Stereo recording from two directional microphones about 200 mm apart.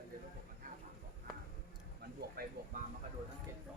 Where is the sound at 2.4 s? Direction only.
50° right (ahead or behind).